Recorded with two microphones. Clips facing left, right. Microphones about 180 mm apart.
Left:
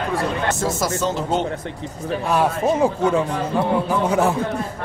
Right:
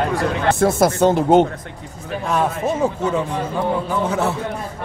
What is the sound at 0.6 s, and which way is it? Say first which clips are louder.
Speech: right 7 dB; 60° right (ahead or behind).